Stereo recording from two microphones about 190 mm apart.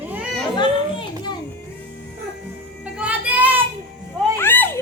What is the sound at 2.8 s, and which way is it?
Child singing, 5° right (ahead or behind).